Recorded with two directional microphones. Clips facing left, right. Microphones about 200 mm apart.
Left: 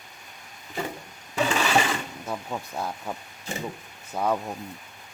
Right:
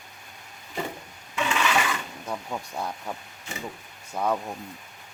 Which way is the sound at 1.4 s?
35° left (ahead or behind).